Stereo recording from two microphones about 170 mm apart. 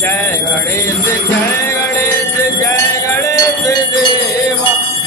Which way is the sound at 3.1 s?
20° left (ahead or behind).